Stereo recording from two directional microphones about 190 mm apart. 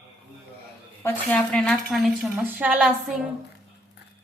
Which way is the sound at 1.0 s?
10° left (ahead or behind).